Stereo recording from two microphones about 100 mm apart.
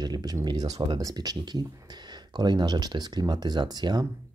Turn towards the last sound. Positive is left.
turn(degrees=-45)  # may be behind; listen again after turning